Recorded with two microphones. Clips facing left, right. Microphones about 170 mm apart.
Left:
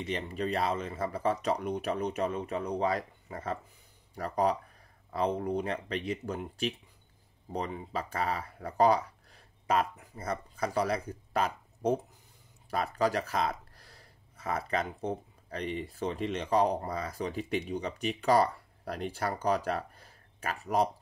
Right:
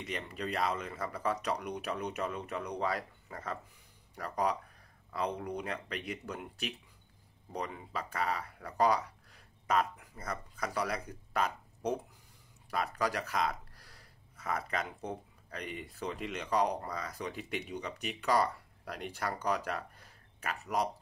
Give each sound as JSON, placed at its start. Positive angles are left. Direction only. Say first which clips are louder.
{"t": 0.0, "sound": "speech", "louder": "left 5 dB", "side_deg": 30}